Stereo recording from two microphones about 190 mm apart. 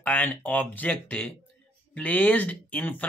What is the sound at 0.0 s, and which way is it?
Speech, 10° left (ahead or behind).